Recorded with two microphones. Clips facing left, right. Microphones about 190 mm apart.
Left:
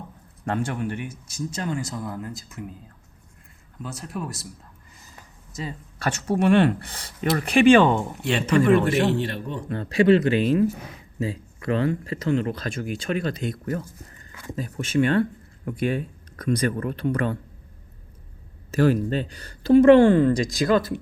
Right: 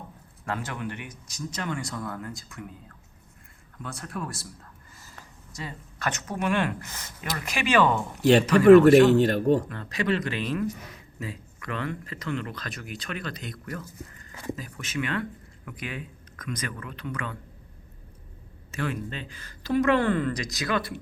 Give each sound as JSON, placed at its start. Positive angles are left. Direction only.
{"t": 0.4, "sound": "a man's voice", "side_deg": 50}
{"t": 1.4, "sound": "speech", "side_deg": 30}
{"t": 3.8, "sound": "speech", "side_deg": 20}
{"t": 8.6, "sound": "a man's voice", "side_deg": -45}
{"t": 9.6, "sound": "speech", "side_deg": 30}
{"t": 18.7, "sound": "speech", "side_deg": 40}